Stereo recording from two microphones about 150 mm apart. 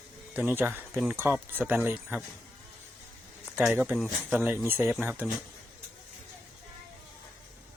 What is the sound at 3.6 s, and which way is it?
Speech, 10° right (ahead or behind).